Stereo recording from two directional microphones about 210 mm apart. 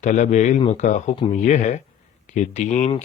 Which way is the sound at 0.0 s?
35° left (ahead or behind).